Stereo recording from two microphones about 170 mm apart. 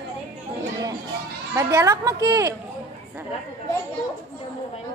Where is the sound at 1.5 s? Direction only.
15° right (ahead or behind).